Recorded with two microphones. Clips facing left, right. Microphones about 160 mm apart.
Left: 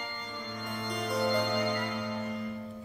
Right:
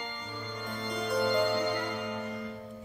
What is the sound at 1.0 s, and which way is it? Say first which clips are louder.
Music: right 2 dB; centre (ahead or behind).